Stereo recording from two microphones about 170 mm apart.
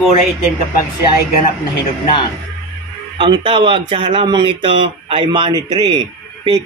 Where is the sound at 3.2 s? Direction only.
30° right (ahead or behind).